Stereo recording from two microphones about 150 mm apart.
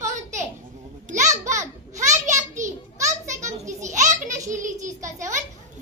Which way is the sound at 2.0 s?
55° right (ahead or behind).